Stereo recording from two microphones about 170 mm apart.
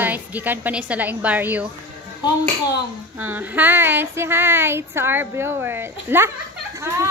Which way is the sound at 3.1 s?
10° right (ahead or behind).